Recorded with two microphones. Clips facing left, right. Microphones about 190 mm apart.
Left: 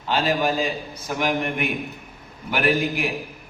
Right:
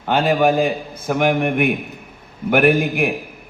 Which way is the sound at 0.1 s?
55° right (ahead or behind).